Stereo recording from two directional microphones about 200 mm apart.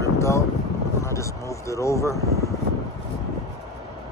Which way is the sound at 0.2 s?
15° left (ahead or behind).